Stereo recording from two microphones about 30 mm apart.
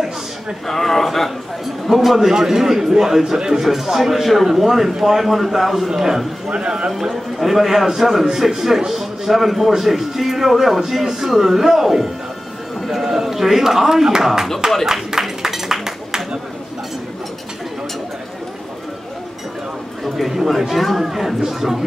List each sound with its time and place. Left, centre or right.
0.7 s a man's voice: centre
2.0 s speech: centre
3.6 s a man's voice: centre
6.5 s speech: right
6.9 s speech: centre
12.8 s a man's voice: centre
14.9 s a sound: centre
20.2 s a sound: centre
20.7 s a man's voice: centre